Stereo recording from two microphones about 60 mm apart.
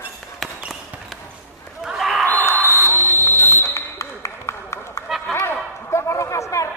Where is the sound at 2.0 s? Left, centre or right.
Centre.